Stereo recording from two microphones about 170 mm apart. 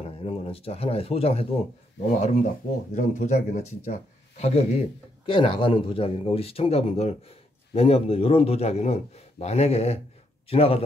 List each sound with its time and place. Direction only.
0.0 s speech: 35° left (ahead or behind)